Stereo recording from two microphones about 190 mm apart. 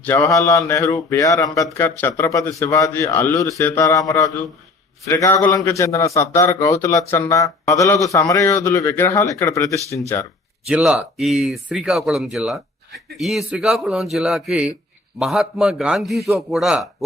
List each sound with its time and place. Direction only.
0.0 s a man's voice: 15° left (ahead or behind)
10.7 s speech: 5° right (ahead or behind)